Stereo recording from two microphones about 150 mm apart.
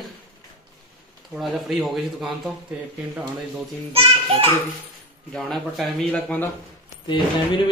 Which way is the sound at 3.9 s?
40° right (ahead or behind).